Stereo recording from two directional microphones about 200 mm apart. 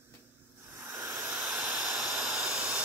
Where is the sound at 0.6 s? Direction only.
10° right (ahead or behind).